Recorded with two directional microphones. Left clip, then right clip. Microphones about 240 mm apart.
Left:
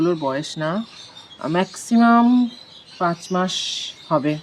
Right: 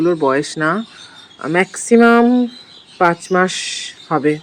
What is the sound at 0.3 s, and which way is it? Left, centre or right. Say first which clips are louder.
Speech: right 8 dB; centre.